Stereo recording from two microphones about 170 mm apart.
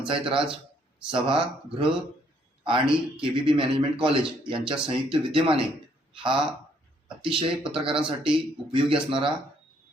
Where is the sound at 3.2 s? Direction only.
30° right (ahead or behind).